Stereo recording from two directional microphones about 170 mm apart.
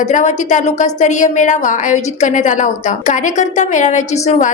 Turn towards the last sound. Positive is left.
turn(degrees=40)  # may be behind; listen again after turning